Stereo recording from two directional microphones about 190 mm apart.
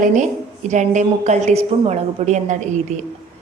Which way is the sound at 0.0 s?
40° right (ahead or behind).